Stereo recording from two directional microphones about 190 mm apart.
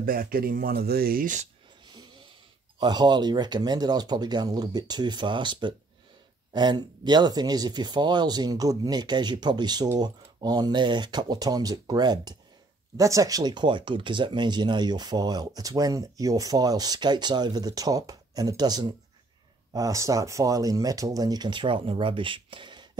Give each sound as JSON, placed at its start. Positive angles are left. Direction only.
{"t": 0.0, "sound": "speech", "side_deg": -50}
{"t": 2.8, "sound": "speech", "side_deg": -25}